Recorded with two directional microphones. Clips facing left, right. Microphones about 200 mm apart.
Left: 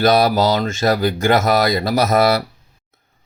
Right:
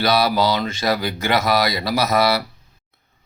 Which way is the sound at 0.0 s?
45° left (ahead or behind).